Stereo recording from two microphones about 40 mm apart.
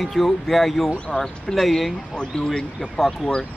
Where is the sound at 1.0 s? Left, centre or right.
Centre.